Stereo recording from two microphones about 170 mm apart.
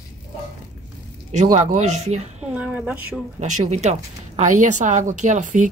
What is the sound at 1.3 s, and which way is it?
Speech, 45° right (ahead or behind).